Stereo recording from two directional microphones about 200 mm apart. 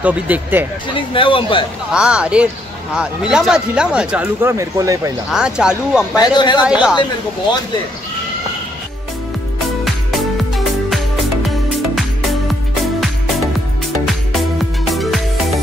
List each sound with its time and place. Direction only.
0.0 s speech: 10° right (ahead or behind)
0.9 s speech: 25° left (ahead or behind)
1.9 s speech: 5° right (ahead or behind)
5.3 s speech: 5° right (ahead or behind)
6.1 s speech: 20° left (ahead or behind)
6.6 s speech: 5° right (ahead or behind)
9.8 s music: centre (ahead or behind)
14.9 s music: centre (ahead or behind)